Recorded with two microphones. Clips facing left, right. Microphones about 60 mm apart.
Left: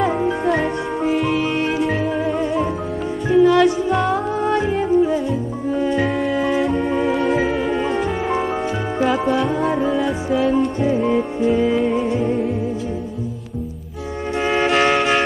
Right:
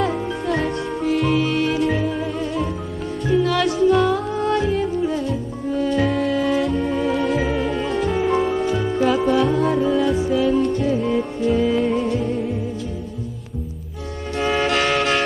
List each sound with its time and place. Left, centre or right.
1.1 s music: centre
1.4 s music: left
1.8 s music: centre
2.0 s music: centre
8.3 s music: centre
14.4 s music: centre